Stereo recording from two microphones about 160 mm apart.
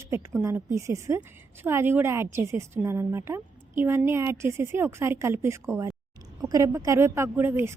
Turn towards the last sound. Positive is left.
turn(degrees=-15)  # may be behind; listen again after turning